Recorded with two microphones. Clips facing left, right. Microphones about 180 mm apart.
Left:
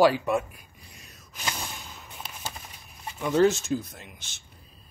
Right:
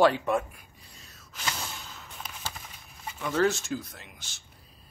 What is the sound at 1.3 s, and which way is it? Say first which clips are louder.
Snort: left 1 dB; 15° left (ahead or behind).